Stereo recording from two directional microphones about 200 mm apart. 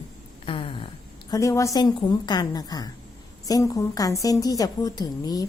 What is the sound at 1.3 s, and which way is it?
A woman's voice, 15° left (ahead or behind).